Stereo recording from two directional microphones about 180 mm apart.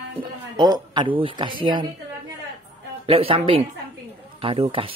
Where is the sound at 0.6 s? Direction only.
25° right (ahead or behind).